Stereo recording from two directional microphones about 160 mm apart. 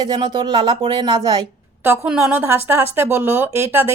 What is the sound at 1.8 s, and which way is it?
A woman's voice, 10° right (ahead or behind).